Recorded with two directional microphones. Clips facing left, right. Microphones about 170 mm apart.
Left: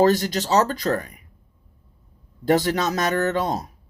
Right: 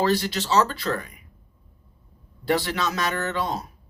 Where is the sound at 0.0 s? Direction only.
45° left (ahead or behind).